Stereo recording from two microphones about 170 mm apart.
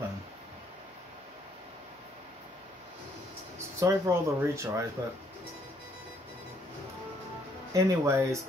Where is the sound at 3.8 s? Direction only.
20° right (ahead or behind).